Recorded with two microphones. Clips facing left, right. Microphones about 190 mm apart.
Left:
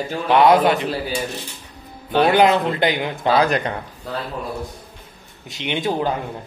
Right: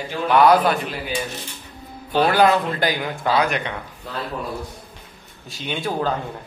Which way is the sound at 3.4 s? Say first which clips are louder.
Left 4 dB; 35° left (ahead or behind).